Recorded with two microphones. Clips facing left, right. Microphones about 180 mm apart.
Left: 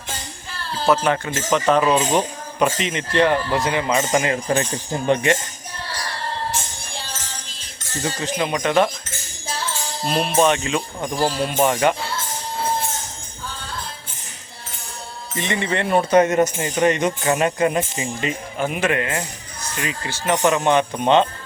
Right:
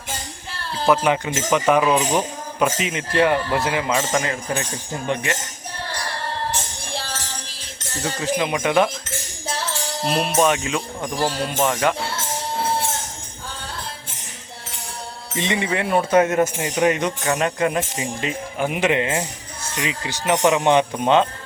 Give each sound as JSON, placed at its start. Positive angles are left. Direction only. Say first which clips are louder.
{"t": 0.9, "sound": "speech", "louder": "even", "side_deg": -15}
{"t": 4.1, "sound": "speech", "louder": "left 3 dB", "side_deg": 15}
{"t": 5.0, "sound": "speech", "louder": "left 6 dB", "side_deg": 30}
{"t": 8.0, "sound": "speech", "louder": "right 1 dB", "side_deg": -5}
{"t": 10.1, "sound": "speech", "louder": "left 1 dB", "side_deg": -5}
{"t": 15.4, "sound": "speech", "louder": "even", "side_deg": -15}
{"t": 17.1, "sound": "speech", "louder": "left 2 dB", "side_deg": 5}
{"t": 18.6, "sound": "a man's voice", "louder": "right 1 dB", "side_deg": -15}
{"t": 20.9, "sound": "speech", "louder": "left 1 dB", "side_deg": -5}